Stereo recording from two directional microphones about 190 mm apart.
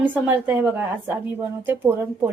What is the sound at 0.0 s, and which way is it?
A woman's voice, 10° right (ahead or behind).